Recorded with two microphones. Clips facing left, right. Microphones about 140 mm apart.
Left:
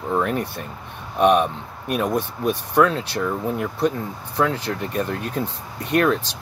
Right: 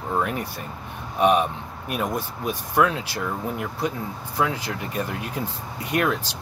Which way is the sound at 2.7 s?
10° right (ahead or behind).